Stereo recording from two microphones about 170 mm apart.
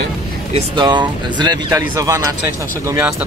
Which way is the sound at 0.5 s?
40° right (ahead or behind).